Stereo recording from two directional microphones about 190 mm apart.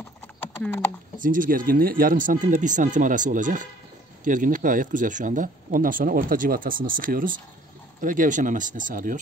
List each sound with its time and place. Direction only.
0.6 s speech: 10° left (ahead or behind)
1.2 s speech: 45° right (ahead or behind)